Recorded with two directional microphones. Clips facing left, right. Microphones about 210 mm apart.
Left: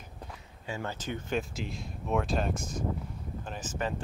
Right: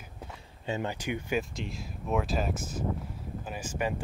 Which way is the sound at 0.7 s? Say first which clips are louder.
Right 4 dB; 15° right (ahead or behind).